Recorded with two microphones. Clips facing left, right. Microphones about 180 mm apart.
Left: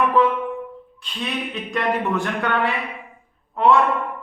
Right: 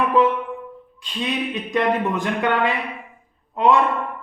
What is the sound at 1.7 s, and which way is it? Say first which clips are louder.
Speech: right 2 dB; 15° right (ahead or behind).